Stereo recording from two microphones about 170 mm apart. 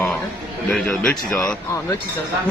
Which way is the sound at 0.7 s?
5° left (ahead or behind).